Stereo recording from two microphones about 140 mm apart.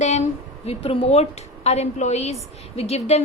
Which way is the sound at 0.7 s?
45° left (ahead or behind).